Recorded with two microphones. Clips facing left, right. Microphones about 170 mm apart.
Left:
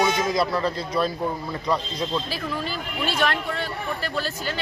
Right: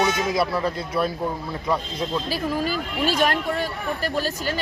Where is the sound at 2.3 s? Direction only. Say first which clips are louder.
Right 5 dB; 40° right (ahead or behind).